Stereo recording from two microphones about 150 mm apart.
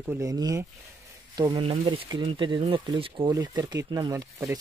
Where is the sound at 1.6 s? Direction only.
35° right (ahead or behind).